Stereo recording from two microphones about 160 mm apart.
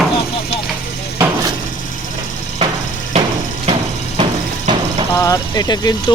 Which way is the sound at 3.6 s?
35° right (ahead or behind).